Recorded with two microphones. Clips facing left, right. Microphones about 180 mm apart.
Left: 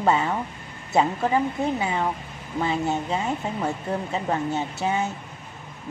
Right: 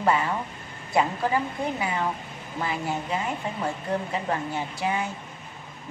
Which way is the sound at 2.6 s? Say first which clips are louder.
Left 5 dB; 25° left (ahead or behind).